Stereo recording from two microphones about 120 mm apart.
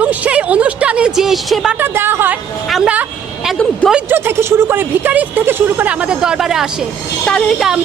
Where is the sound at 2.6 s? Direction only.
Centre (ahead or behind).